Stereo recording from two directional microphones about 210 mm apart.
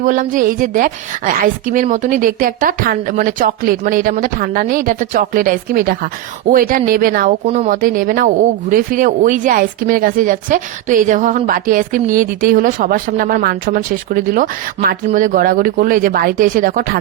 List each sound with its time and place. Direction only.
0.0 s speech: 40° right (ahead or behind)
7.4 s speech: 35° right (ahead or behind)